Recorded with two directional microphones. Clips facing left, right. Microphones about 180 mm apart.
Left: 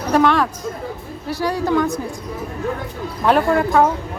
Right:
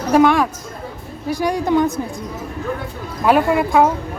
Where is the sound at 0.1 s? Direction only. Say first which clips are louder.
Right 2 dB; 10° right (ahead or behind).